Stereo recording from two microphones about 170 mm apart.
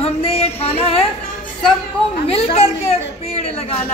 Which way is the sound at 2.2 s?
40° left (ahead or behind).